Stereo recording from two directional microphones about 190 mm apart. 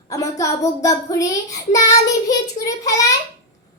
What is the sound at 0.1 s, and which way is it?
A child's voice, 15° left (ahead or behind).